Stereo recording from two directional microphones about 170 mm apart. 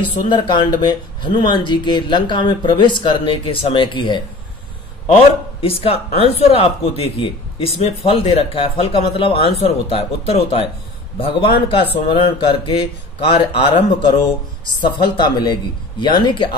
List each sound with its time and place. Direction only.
0.3 s a man's voice: 25° left (ahead or behind)